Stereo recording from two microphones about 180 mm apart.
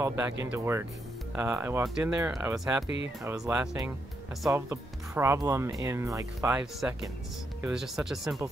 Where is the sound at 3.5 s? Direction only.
5° right (ahead or behind).